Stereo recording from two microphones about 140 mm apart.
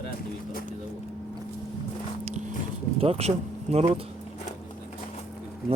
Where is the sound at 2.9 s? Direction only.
45° right (ahead or behind).